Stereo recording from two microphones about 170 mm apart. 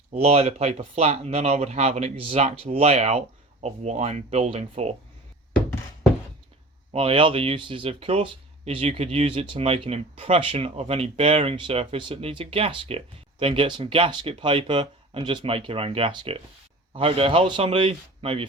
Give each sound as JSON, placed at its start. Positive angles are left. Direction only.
{"t": 0.1, "sound": "speech", "side_deg": -35}
{"t": 6.9, "sound": "speech", "side_deg": -35}